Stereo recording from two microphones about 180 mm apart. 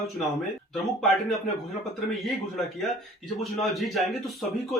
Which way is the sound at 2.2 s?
Centre (ahead or behind).